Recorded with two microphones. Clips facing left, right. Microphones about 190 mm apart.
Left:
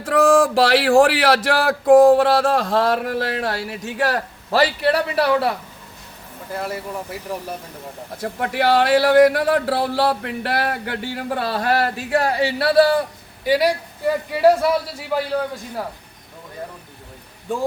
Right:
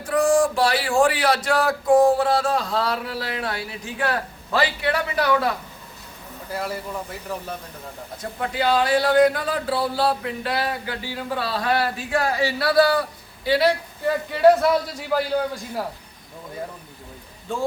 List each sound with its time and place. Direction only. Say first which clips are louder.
0.0 s speech: left 3 dB; 75° left (ahead or behind)
1.9 s a man's voice: left 6 dB; 55° left (ahead or behind); by 5.5 s 30° left (ahead or behind)
6.6 s speech: left 2 dB; centre (ahead or behind)
8.2 s speech: left 3 dB; 70° left (ahead or behind); by 13.1 s 30° left (ahead or behind)
13.4 s a man's voice: left 1 dB; 15° left (ahead or behind)